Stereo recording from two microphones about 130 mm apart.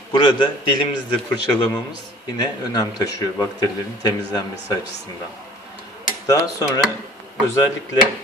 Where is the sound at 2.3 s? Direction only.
30° left (ahead or behind).